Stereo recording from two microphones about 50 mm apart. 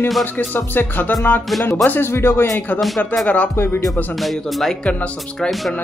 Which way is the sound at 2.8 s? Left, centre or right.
Centre.